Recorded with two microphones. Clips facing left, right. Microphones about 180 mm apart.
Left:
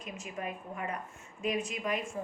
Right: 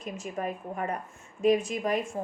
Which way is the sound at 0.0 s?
45° right (ahead or behind).